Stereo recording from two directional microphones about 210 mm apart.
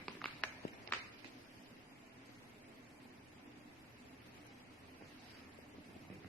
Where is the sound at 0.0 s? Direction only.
5° left (ahead or behind).